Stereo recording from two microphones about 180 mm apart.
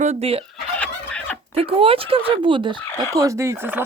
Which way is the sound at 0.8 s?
5° left (ahead or behind).